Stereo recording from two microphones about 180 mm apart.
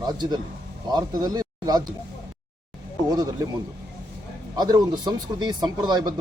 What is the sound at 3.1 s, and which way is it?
Speech, 20° right (ahead or behind).